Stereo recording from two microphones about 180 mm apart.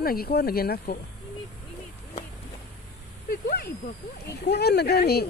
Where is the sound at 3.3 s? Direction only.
60° left (ahead or behind).